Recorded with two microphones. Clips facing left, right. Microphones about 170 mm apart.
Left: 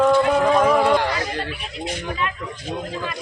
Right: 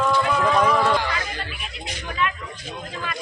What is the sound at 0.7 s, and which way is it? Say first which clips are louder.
Speech: left 4 dB; 15° left (ahead or behind).